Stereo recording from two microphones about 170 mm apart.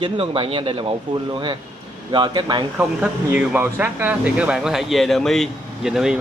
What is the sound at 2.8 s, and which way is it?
Speech, 10° right (ahead or behind).